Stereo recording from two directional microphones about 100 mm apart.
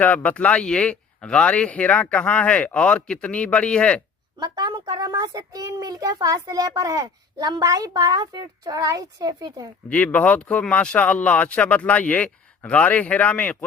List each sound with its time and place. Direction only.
0.0 s a man's voice: 15° left (ahead or behind)
4.4 s speech: 45° right (ahead or behind)
9.9 s a man's voice: 15° left (ahead or behind)